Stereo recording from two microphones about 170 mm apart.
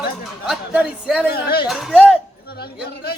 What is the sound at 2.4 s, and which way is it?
Speech, 65° left (ahead or behind).